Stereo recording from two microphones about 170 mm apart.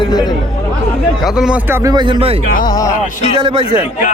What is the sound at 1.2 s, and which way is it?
Speech, 5° right (ahead or behind).